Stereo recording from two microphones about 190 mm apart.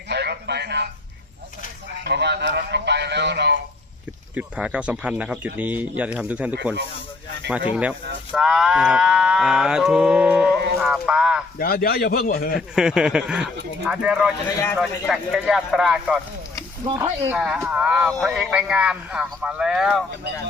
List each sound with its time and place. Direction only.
0.1 s a sound: 60° right (ahead or behind)
2.0 s speech: 60° right (ahead or behind)
4.4 s speech: 5° right (ahead or behind)
7.7 s speech: 5° right (ahead or behind)
10.8 s a sound: 5° right (ahead or behind)
11.5 s speech: 50° left (ahead or behind)
12.5 s speech: 5° right (ahead or behind)
16.8 s speech: 20° right (ahead or behind)
17.3 s speech: 5° right (ahead or behind)